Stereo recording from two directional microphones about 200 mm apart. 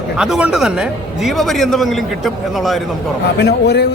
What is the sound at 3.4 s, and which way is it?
Speech, 55° left (ahead or behind).